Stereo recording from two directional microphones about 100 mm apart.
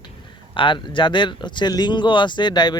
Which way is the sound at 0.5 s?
55° left (ahead or behind).